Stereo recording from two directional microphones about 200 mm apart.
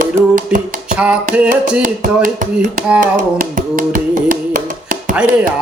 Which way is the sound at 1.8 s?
40° right (ahead or behind).